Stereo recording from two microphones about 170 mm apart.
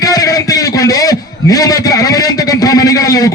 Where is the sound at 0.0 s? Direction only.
20° left (ahead or behind).